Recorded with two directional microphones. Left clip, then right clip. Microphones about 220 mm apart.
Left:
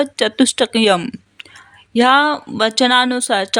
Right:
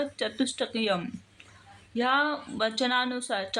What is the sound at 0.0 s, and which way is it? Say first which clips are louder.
Speech: left 14 dB; 50° left (ahead or behind).